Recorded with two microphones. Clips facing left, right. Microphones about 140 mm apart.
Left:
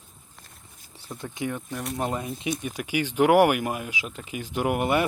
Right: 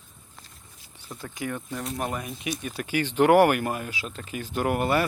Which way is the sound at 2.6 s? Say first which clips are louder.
Even; 15° left (ahead or behind).